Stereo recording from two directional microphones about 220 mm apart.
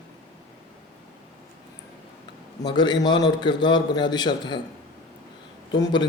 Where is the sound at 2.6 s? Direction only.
20° left (ahead or behind).